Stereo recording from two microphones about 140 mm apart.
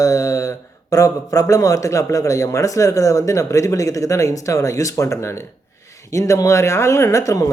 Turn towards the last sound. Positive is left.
turn(degrees=25)  # may be behind; listen again after turning